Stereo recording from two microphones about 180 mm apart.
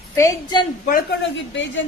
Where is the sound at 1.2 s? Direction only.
90° left.